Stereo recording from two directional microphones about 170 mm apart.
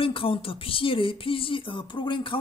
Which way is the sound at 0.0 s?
30° left (ahead or behind).